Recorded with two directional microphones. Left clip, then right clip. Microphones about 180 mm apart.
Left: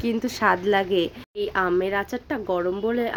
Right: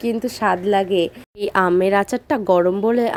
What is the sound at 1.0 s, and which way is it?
A woman's voice, 50° right (ahead or behind).